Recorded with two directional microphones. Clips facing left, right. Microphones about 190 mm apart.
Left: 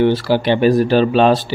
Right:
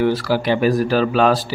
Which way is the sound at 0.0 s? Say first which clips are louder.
Left 3 dB; 25° left (ahead or behind).